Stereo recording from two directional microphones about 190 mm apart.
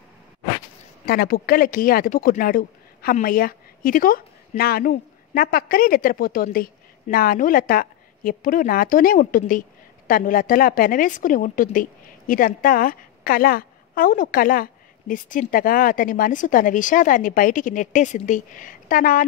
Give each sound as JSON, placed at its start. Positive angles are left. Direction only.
{"t": 1.0, "sound": "speech", "side_deg": 50}